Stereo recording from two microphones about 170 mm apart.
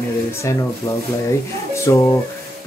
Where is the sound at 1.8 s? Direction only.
15° left (ahead or behind).